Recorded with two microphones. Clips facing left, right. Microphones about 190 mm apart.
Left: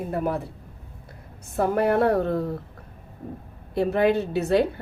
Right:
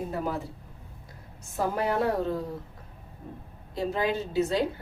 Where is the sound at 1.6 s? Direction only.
60° left (ahead or behind).